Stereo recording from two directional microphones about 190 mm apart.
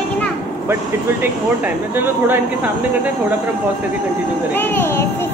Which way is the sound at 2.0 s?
10° right (ahead or behind).